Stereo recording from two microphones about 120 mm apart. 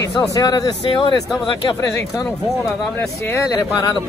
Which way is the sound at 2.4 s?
Centre (ahead or behind).